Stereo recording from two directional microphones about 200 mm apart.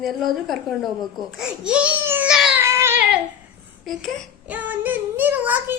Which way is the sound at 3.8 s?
5° right (ahead or behind).